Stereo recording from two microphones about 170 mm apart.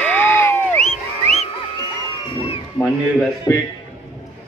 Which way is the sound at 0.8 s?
40° left (ahead or behind).